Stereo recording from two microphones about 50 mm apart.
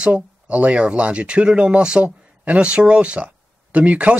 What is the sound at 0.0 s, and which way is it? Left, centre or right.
Speech, right.